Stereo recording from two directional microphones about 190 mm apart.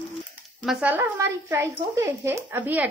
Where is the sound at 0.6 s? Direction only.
5° right (ahead or behind).